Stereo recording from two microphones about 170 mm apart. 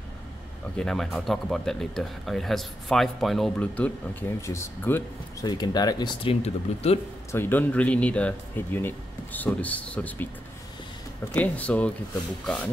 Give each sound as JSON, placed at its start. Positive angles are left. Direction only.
{"t": 0.7, "sound": "speech", "side_deg": 0}
{"t": 6.4, "sound": "speech", "side_deg": 40}
{"t": 7.3, "sound": "speech", "side_deg": 10}
{"t": 11.3, "sound": "speech", "side_deg": 10}